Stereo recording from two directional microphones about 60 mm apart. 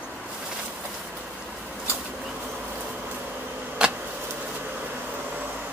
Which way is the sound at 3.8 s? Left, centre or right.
Centre.